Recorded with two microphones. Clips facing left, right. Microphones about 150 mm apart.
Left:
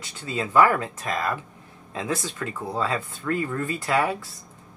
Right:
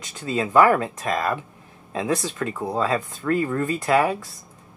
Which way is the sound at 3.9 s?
20° right (ahead or behind).